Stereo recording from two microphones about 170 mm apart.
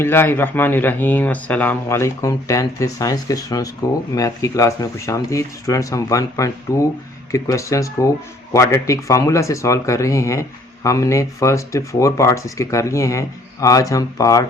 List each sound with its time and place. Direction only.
0.0 s speech: 15° left (ahead or behind)